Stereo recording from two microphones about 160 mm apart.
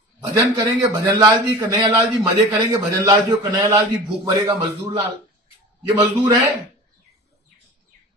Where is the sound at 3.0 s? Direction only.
20° right (ahead or behind).